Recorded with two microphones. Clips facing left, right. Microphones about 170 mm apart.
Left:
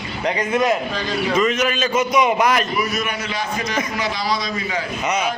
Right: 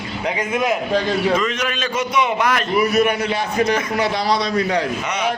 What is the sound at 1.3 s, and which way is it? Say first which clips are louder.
Speech: left 2 dB; 10° left (ahead or behind).